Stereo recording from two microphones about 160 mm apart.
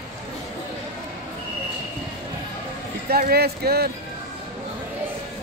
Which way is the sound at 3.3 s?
80° right.